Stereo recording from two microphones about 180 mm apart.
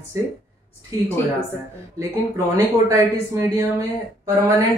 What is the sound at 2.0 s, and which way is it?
Speech, 20° right (ahead or behind).